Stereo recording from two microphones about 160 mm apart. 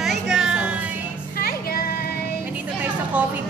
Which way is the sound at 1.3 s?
70° left (ahead or behind).